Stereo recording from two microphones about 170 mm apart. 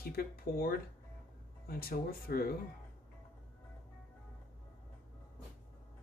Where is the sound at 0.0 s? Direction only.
60° left (ahead or behind).